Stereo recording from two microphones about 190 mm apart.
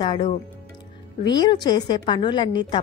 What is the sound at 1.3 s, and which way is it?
A woman's voice, 20° left (ahead or behind).